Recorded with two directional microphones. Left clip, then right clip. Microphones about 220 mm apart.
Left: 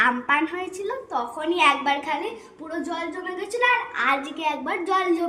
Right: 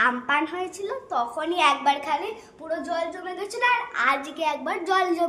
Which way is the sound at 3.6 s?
15° right (ahead or behind).